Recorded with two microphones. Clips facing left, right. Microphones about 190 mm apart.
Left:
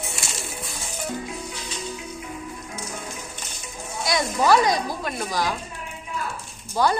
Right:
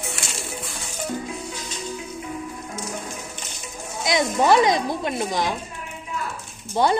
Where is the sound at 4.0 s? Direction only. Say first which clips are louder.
Right 2 dB; 20° right (ahead or behind).